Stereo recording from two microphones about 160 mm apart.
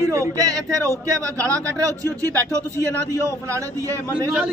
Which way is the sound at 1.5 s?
20° right (ahead or behind).